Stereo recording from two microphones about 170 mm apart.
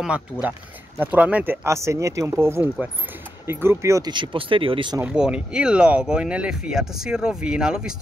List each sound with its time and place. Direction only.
0.0 s speech: 5° right (ahead or behind); by 4.9 s 30° right (ahead or behind)
5.0 s speech: 5° right (ahead or behind)